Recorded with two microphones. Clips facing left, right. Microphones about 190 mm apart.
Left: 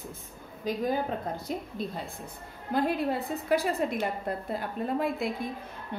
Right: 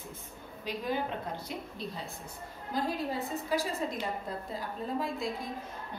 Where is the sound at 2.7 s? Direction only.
60° left (ahead or behind).